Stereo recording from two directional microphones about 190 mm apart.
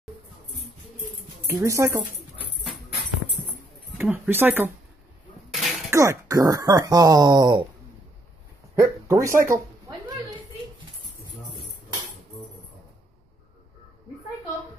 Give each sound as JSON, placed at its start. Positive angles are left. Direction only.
{"t": 1.5, "sound": "speech", "side_deg": -15}
{"t": 4.0, "sound": "speech", "side_deg": -10}
{"t": 5.5, "sound": "a sound", "side_deg": 0}
{"t": 5.9, "sound": "speech", "side_deg": -15}
{"t": 8.7, "sound": "speech", "side_deg": -15}
{"t": 9.3, "sound": "speech", "side_deg": -45}